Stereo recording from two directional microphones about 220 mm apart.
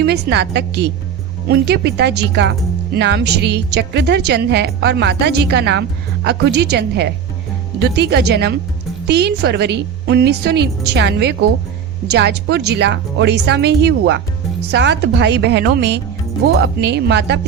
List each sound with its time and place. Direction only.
0.0 s speech: 50° right (ahead or behind)